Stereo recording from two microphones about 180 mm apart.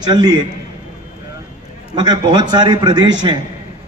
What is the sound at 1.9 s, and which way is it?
A man's voice, 25° right (ahead or behind).